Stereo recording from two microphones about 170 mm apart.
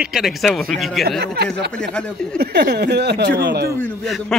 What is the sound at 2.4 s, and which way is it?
Speech, 70° right (ahead or behind).